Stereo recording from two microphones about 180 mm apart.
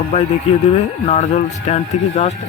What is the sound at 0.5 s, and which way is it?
Speech, 35° left (ahead or behind).